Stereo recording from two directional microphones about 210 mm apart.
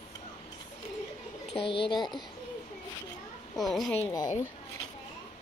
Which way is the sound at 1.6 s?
25° left (ahead or behind).